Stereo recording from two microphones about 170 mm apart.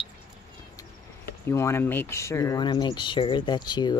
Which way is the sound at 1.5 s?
15° left (ahead or behind).